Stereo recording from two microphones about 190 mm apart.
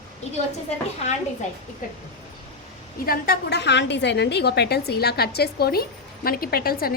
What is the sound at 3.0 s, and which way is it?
A woman's voice, 50° left (ahead or behind).